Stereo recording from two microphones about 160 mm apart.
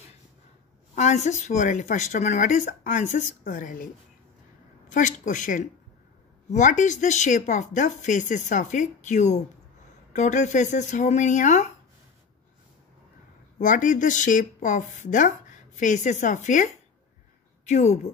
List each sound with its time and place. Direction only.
0.9 s a woman's voice: 50° left (ahead or behind)
4.9 s speech: 50° left (ahead or behind)
13.6 s speech: 55° left (ahead or behind)